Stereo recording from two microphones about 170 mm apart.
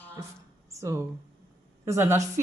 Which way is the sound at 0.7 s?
15° right (ahead or behind).